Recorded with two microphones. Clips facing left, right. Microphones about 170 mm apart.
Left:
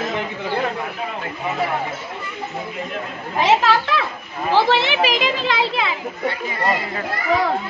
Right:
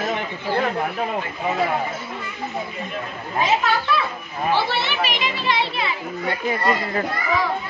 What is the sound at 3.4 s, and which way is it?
A woman's voice, 85° left.